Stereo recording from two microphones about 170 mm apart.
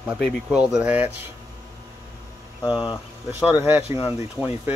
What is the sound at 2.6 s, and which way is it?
Speech, 5° right (ahead or behind).